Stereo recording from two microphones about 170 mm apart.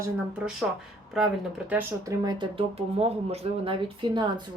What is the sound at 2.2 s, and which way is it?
Speech, 30° right (ahead or behind).